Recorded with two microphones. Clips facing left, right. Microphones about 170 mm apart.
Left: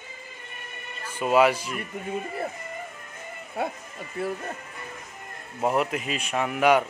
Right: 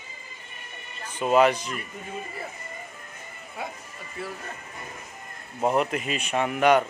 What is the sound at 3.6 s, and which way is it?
Speech, 60° left (ahead or behind).